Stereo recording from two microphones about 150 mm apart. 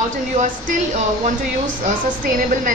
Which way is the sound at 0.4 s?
55° right (ahead or behind).